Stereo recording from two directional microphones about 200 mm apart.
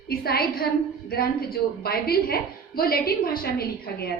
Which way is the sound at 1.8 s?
50° left (ahead or behind).